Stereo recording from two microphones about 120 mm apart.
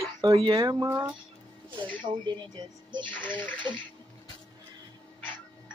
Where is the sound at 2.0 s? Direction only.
40° right (ahead or behind).